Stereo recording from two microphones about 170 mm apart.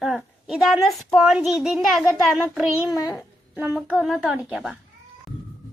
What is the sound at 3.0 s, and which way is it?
Speech, 20° left (ahead or behind).